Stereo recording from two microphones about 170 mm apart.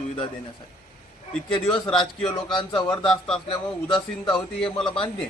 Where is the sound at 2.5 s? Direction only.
25° left (ahead or behind).